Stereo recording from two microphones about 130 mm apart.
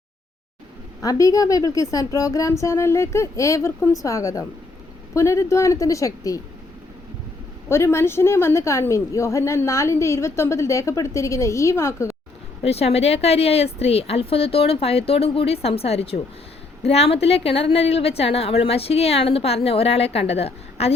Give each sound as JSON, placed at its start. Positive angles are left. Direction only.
{"t": 1.0, "sound": "a woman's voice", "side_deg": 25}
{"t": 7.7, "sound": "a woman's voice", "side_deg": 20}
{"t": 12.6, "sound": "a woman's voice", "side_deg": 50}